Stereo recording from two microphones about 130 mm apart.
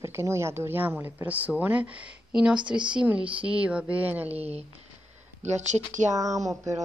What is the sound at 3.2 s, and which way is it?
Speech, 45° right (ahead or behind).